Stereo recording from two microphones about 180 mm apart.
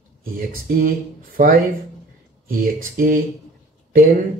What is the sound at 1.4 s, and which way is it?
Speech, 50° right (ahead or behind).